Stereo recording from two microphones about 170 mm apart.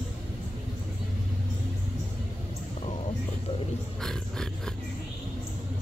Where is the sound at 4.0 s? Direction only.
5° left (ahead or behind).